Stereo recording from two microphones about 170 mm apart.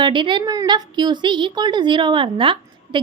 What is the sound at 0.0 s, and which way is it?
A woman's voice, 30° right (ahead or behind).